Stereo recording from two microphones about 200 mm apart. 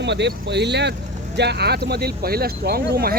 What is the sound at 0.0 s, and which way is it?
Speech, 60° right (ahead or behind).